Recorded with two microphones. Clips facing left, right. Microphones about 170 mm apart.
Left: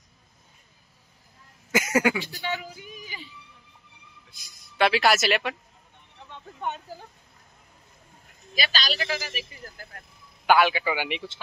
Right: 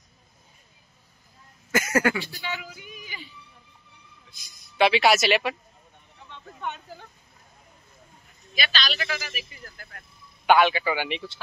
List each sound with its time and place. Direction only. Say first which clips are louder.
1.7 s a man's voice: even; 15° left (ahead or behind)
2.3 s female singing: left 3 dB; 40° left (ahead or behind)
4.7 s speech: right 2 dB; centre (ahead or behind)
8.5 s a man's voice: even; 40° left (ahead or behind)
10.4 s a man's voice: right 1 dB; 5° left (ahead or behind)